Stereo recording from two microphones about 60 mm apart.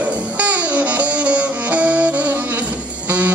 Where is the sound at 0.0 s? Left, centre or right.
Right.